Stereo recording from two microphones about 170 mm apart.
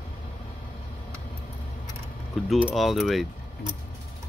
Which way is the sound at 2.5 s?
5° right (ahead or behind).